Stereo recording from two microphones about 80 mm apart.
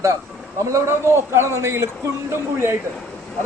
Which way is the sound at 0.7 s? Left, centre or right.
Right.